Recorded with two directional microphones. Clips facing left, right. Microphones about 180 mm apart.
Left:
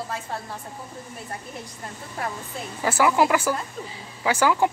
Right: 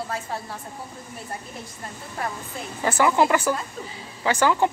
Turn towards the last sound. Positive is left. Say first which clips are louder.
# even
turn(degrees=10)  # may be behind; listen again after turning